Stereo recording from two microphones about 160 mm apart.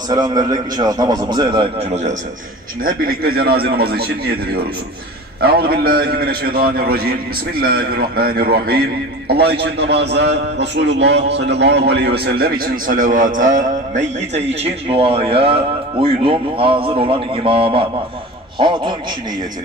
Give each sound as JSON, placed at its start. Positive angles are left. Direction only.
{"t": 0.1, "sound": "a man's voice", "side_deg": -25}
{"t": 2.8, "sound": "a man's voice", "side_deg": -65}
{"t": 9.3, "sound": "a man's voice", "side_deg": -85}